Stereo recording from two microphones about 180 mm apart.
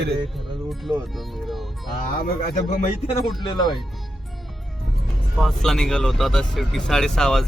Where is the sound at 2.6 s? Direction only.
40° left (ahead or behind).